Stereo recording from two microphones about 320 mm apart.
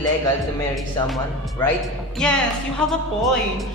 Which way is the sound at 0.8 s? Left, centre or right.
Centre.